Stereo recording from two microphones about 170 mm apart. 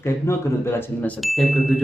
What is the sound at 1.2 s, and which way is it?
Ding, centre (ahead or behind).